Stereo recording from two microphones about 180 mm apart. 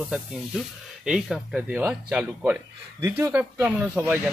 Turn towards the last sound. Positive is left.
turn(degrees=-10)  # may be behind; listen again after turning